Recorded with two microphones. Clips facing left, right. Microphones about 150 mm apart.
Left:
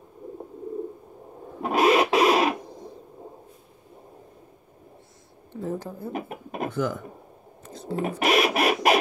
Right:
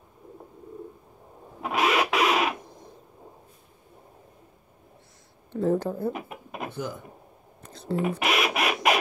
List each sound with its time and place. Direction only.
1.6 s a sound: 35° left (ahead or behind)
5.5 s a woman's voice: 75° right (ahead or behind)
6.1 s speech: 40° left (ahead or behind)